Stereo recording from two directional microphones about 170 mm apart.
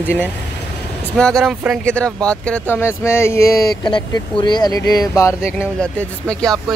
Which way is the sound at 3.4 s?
65° left (ahead or behind).